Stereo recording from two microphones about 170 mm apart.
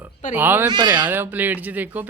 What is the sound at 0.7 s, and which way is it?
Speech, 25° right (ahead or behind).